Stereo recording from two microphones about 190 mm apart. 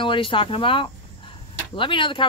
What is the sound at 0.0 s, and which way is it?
Speech, 25° left (ahead or behind).